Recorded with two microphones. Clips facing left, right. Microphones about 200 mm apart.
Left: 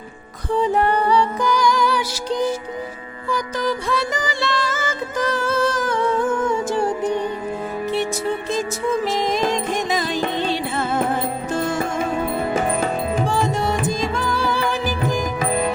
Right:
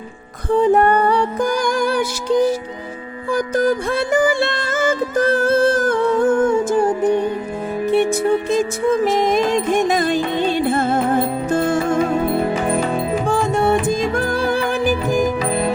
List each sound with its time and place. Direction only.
0.5 s music: 55° right (ahead or behind)
3.2 s music: 50° right (ahead or behind)
13.2 s music: 55° right (ahead or behind)